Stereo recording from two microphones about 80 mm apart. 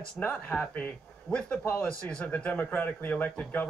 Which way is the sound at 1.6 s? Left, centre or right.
Left.